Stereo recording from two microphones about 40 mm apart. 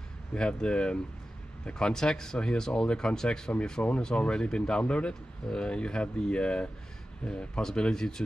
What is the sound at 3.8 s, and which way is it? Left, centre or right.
Speech, left.